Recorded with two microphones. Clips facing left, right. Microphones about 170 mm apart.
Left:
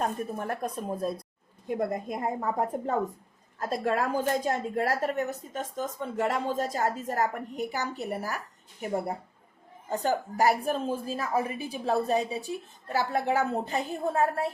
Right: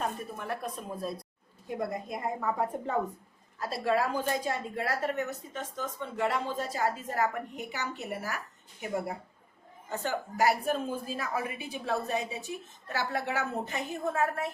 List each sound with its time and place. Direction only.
0.0 s a woman's voice: 45° left (ahead or behind)